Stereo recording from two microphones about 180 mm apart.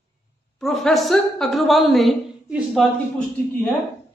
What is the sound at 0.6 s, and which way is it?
A man's voice, centre (ahead or behind).